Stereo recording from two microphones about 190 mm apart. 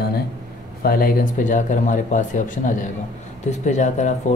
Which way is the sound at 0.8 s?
50° left (ahead or behind).